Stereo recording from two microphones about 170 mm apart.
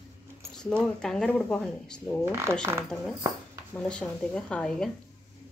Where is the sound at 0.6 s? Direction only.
5° left (ahead or behind).